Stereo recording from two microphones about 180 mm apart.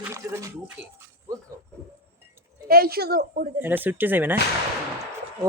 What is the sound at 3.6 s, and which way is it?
Speech, 10° right (ahead or behind).